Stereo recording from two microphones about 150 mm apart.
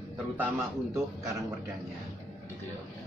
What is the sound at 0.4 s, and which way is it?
Speech, 10° right (ahead or behind).